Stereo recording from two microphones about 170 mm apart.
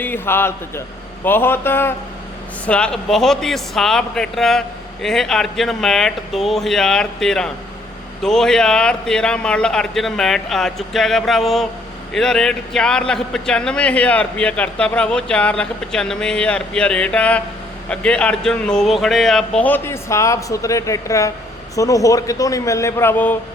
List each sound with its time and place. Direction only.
0.0 s a man's voice: 10° left (ahead or behind)